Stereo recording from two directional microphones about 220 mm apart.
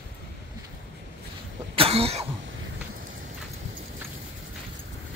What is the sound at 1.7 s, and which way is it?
Cough, 25° right (ahead or behind).